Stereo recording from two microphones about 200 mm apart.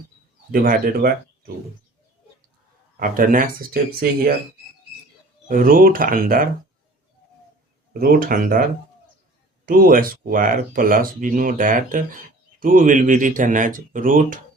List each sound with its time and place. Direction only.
0.5 s speech: 45° right (ahead or behind)
3.0 s speech: 45° right (ahead or behind)
5.5 s speech: 45° right (ahead or behind)
7.9 s speech: 45° right (ahead or behind)